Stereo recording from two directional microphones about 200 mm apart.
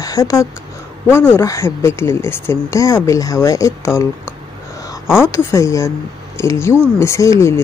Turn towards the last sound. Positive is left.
turn(degrees=15)  # may be behind; listen again after turning